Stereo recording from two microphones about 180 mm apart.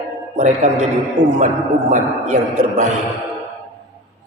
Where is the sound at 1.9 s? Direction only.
45° right (ahead or behind).